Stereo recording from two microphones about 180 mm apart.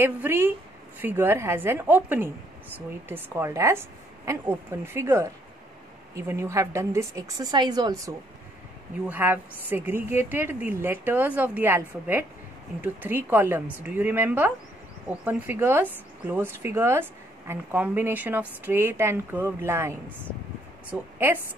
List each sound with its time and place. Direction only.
0.0 s speech: 10° right (ahead or behind)
12.8 s speech: 10° right (ahead or behind)